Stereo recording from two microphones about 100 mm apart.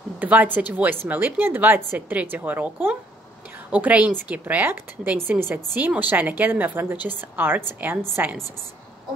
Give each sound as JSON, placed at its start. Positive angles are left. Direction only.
{"t": 0.2, "sound": "a woman's voice", "side_deg": -15}